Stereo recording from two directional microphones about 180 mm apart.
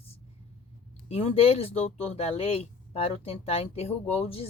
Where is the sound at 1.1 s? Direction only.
35° left (ahead or behind).